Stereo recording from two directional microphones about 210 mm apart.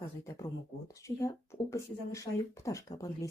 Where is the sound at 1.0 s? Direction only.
15° left (ahead or behind).